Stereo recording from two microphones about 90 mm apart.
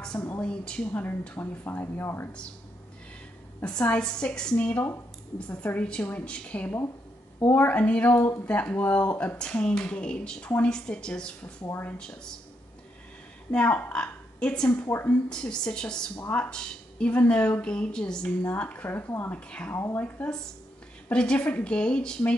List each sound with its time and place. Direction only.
0.4 s speech: 10° left (ahead or behind); by 2.2 s 25° left (ahead or behind)
3.6 s speech: 10° left (ahead or behind)
13.5 s a woman's voice: 15° left (ahead or behind)
14.9 s speech: 25° left (ahead or behind)
15.2 s speech: 10° left (ahead or behind)
19.5 s speech: 15° left (ahead or behind)
21.1 s speech: 10° left (ahead or behind)